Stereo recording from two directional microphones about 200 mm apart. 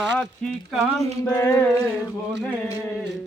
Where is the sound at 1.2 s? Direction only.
15° left (ahead or behind).